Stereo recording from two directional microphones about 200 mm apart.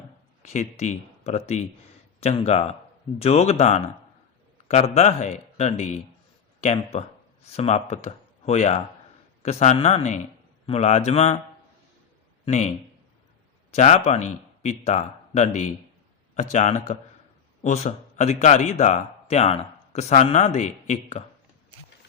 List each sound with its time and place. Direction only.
0.4 s a man's voice: 35° left (ahead or behind)
12.5 s a man's voice: 35° left (ahead or behind)